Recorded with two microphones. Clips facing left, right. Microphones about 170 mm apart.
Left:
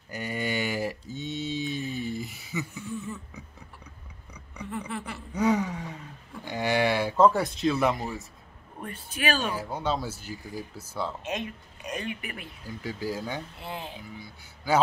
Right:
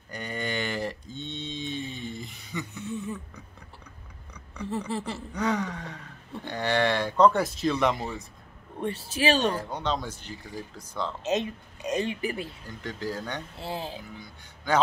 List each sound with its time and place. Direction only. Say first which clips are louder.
0.1 s mantra: left 2 dB; 10° left (ahead or behind)
2.8 s a sound: right 2 dB; 20° right (ahead or behind)
4.6 s speech: right 4 dB; 30° right (ahead or behind)
5.3 s speech: left 4 dB; 10° left (ahead or behind)
8.8 s speech: right 5 dB; 30° right (ahead or behind)
9.4 s speech: right 3 dB; 10° left (ahead or behind)
11.2 s speech: right 6 dB; 25° right (ahead or behind)
12.6 s speech: left 5 dB; 10° left (ahead or behind)
13.6 s speech: right 3 dB; 30° right (ahead or behind)
14.1 s speech: left 1 dB; 5° left (ahead or behind)